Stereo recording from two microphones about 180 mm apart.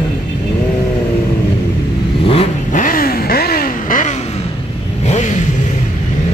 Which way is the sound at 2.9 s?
55° left (ahead or behind).